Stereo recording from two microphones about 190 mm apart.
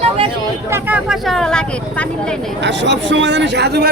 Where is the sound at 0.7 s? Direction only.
10° right (ahead or behind).